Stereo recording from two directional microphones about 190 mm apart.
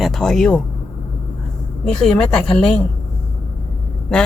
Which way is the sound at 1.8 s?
5° left (ahead or behind).